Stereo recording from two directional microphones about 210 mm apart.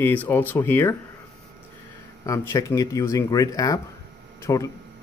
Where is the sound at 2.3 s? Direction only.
15° left (ahead or behind).